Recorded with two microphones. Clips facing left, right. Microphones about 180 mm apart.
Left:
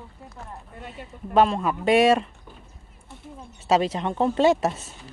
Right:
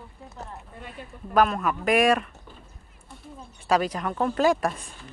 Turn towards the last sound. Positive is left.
turn(degrees=25)  # may be behind; listen again after turning